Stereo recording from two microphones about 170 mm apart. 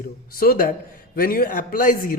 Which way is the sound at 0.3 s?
55° left (ahead or behind).